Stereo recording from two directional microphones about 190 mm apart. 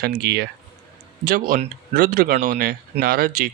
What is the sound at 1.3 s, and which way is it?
Speech, 45° right (ahead or behind).